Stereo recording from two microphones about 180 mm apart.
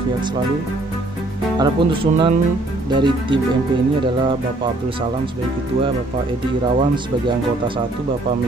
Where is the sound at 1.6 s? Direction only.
25° right (ahead or behind).